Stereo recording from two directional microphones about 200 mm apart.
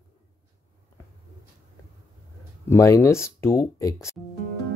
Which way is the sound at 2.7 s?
15° left (ahead or behind).